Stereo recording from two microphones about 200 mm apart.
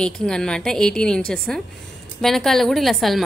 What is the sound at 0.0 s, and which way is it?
A woman's voice, 5° left (ahead or behind).